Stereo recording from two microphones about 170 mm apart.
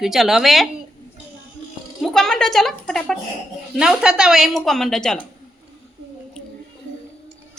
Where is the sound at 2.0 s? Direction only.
Centre (ahead or behind).